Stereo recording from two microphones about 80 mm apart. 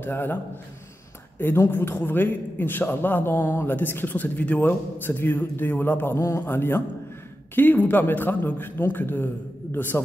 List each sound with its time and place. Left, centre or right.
0.0 s a man's voice: left
1.4 s a man's voice: left
6.1 s a man's voice: left